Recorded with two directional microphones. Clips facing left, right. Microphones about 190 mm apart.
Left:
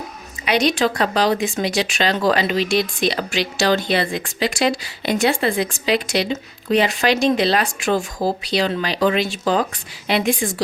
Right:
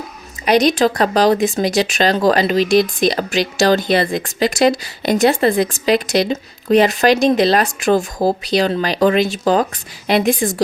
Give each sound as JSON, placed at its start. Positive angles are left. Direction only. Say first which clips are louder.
{"t": 0.4, "sound": "a woman's voice", "louder": "right 5 dB", "side_deg": -40}